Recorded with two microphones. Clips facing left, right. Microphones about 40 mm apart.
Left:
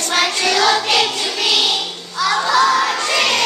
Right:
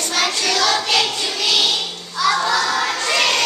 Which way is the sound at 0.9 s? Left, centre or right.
Centre.